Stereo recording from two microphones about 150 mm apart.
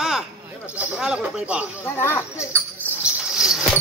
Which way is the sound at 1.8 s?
15° left (ahead or behind).